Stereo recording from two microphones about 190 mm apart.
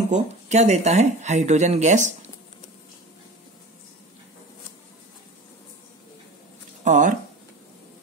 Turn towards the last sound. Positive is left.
turn(degrees=-40)  # may be behind; listen again after turning